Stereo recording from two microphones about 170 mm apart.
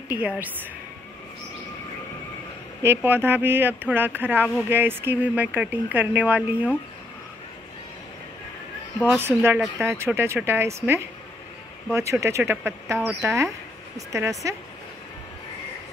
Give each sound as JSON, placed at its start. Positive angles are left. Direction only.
{"t": 2.8, "sound": "speech", "side_deg": -15}
{"t": 9.0, "sound": "speech", "side_deg": -10}